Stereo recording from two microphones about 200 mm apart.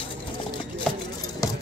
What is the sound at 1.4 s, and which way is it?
Music, 15° left (ahead or behind).